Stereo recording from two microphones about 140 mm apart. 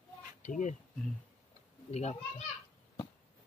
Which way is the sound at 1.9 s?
50° left (ahead or behind).